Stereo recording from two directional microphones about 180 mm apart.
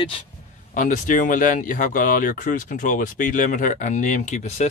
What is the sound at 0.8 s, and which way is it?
Speech, 45° left (ahead or behind).